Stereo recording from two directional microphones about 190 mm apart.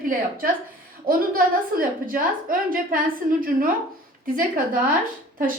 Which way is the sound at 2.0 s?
45° right (ahead or behind).